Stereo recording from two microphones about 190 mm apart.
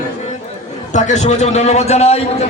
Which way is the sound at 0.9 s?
40° left (ahead or behind).